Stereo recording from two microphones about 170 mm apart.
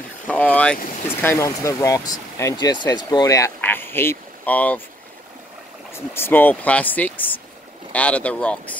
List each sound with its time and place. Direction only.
0.3 s boat: 5° left (ahead or behind)
0.7 s speech: 55° left (ahead or behind)
1.0 s speech: 15° left (ahead or behind)
5.9 s speech: 15° left (ahead or behind)